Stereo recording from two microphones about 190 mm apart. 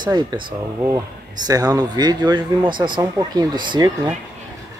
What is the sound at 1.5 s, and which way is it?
A man's voice, 20° right (ahead or behind).